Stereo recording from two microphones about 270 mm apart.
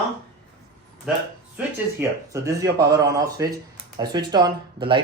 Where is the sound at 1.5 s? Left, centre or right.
Centre.